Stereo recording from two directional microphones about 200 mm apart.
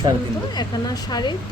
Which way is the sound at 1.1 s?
20° left (ahead or behind).